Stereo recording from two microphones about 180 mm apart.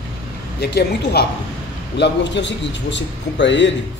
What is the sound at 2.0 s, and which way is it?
A man's voice, 75° left (ahead or behind).